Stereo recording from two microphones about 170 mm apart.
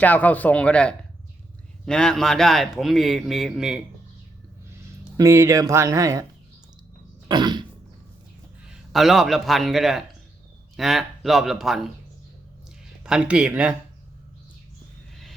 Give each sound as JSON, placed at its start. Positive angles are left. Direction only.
{"t": 0.0, "sound": "a man's voice", "side_deg": 10}
{"t": 5.1, "sound": "speech", "side_deg": -20}
{"t": 7.3, "sound": "a sound", "side_deg": -25}
{"t": 8.7, "sound": "a man's voice", "side_deg": 0}
{"t": 13.0, "sound": "a man's voice", "side_deg": -5}